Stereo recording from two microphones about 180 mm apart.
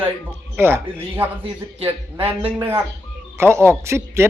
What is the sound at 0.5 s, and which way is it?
Speech, 10° right (ahead or behind).